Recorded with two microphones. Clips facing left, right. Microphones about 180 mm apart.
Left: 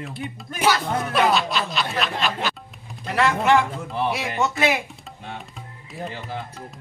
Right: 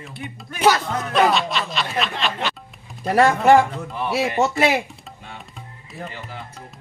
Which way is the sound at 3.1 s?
45° right (ahead or behind).